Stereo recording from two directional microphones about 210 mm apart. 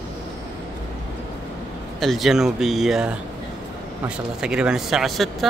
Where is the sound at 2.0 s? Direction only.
Centre (ahead or behind).